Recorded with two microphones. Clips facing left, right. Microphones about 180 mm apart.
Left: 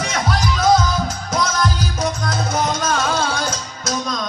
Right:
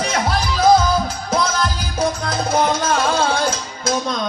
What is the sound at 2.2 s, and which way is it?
Music, 30° right (ahead or behind).